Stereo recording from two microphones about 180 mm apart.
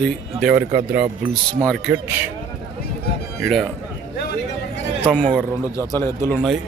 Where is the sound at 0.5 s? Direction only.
55° right (ahead or behind).